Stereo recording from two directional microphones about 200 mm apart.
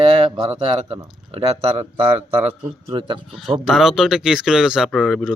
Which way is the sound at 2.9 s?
25° right (ahead or behind).